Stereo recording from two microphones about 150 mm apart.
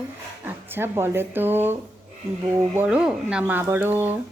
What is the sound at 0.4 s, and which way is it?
Speech, 15° right (ahead or behind).